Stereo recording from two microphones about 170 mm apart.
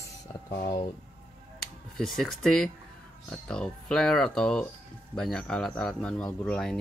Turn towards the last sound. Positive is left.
turn(degrees=5)  # may be behind; listen again after turning